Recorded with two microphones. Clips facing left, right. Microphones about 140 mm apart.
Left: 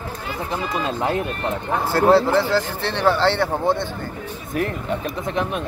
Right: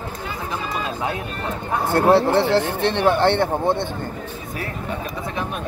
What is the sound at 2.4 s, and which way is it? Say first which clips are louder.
Speech: right 3 dB; 60° right (ahead or behind).